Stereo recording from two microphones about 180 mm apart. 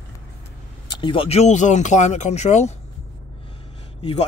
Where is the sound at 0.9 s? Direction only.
25° left (ahead or behind).